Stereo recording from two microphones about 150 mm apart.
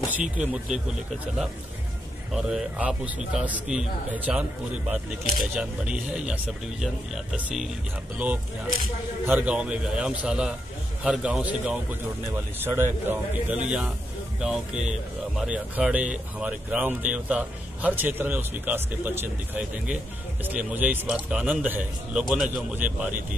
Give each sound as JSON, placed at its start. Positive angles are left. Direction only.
{"t": 0.1, "sound": "speech", "side_deg": -5}
{"t": 2.3, "sound": "a man's voice", "side_deg": -5}
{"t": 9.2, "sound": "a man's voice", "side_deg": -10}